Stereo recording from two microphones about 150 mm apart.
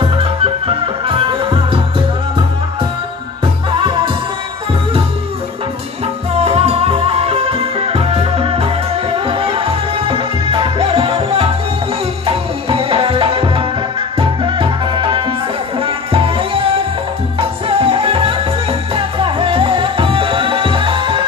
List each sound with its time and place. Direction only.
0.0 s music: 35° right (ahead or behind)
6.4 s music: 40° right (ahead or behind)